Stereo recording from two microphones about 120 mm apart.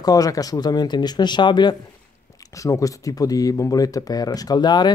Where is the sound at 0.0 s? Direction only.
30° left (ahead or behind).